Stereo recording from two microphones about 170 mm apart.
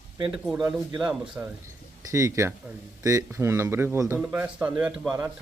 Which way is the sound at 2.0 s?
20° right (ahead or behind).